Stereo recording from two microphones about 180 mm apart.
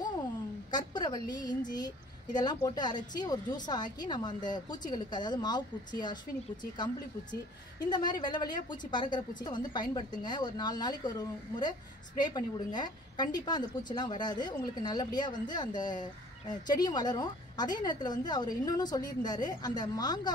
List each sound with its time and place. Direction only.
0.7 s a woman's voice: 25° left (ahead or behind)